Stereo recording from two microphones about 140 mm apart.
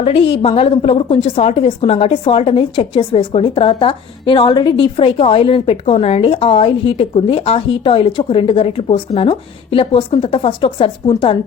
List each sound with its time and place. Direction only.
0.0 s a woman's voice: 45° left (ahead or behind)